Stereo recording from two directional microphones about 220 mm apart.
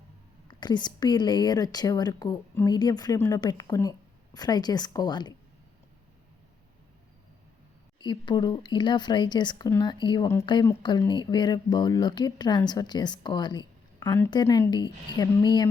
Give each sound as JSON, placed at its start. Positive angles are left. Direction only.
{"t": 0.4, "sound": "speech", "side_deg": 20}
{"t": 7.9, "sound": "speech", "side_deg": 20}